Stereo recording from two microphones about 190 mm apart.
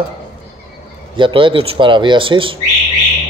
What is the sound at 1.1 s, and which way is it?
Speech, 25° right (ahead or behind).